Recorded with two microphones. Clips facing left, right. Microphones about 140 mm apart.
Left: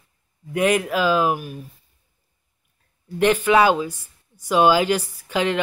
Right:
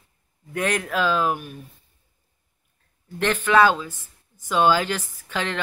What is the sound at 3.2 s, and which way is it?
Speech, 10° left (ahead or behind).